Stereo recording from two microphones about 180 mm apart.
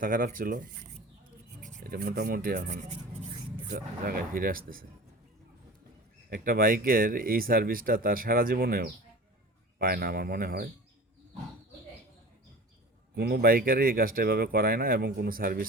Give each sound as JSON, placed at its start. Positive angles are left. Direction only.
{"t": 0.0, "sound": "speech", "side_deg": -50}
{"t": 3.2, "sound": "a sound", "side_deg": -30}
{"t": 3.7, "sound": "speech", "side_deg": -55}
{"t": 6.3, "sound": "speech", "side_deg": -50}
{"t": 13.1, "sound": "speech", "side_deg": -60}